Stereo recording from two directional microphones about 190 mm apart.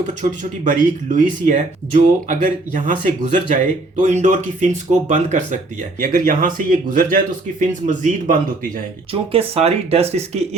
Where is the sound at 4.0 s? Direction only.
40° right (ahead or behind).